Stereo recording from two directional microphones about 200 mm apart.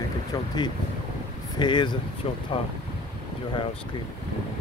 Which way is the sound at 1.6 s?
20° left (ahead or behind).